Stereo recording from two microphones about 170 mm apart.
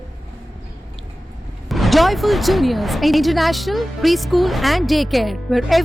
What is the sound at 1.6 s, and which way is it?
Speech, centre (ahead or behind).